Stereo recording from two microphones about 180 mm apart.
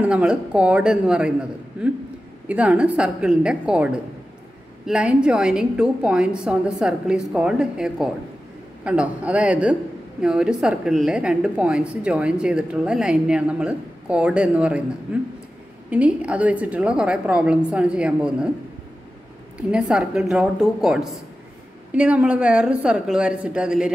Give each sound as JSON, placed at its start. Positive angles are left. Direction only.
{"t": 0.0, "sound": "a woman's voice", "side_deg": -5}
{"t": 15.9, "sound": "a woman's voice", "side_deg": -5}
{"t": 19.7, "sound": "a woman's voice", "side_deg": -5}